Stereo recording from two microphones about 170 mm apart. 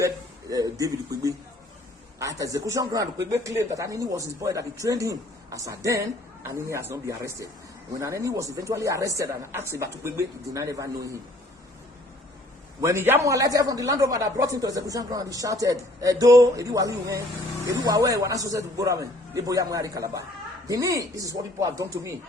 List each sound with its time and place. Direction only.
0.5 s a man's voice: 20° right (ahead or behind)
12.8 s a man's voice: 15° right (ahead or behind)